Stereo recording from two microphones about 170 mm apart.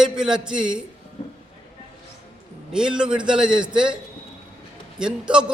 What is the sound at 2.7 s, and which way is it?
A man's voice, 5° right (ahead or behind).